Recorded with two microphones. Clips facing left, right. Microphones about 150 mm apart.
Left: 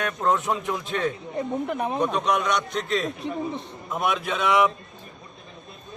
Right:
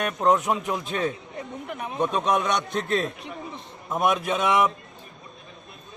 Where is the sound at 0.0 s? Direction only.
20° right (ahead or behind).